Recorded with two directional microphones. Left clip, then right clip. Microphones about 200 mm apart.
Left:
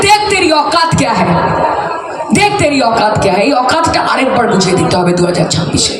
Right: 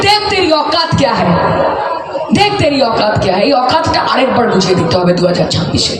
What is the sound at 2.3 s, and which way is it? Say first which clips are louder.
Speech: left 1 dB; 45° left (ahead or behind).